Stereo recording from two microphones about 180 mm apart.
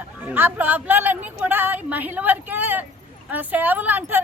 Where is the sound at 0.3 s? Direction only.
10° right (ahead or behind).